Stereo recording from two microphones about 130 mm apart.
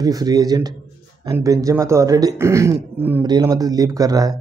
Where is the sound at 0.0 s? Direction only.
30° right (ahead or behind).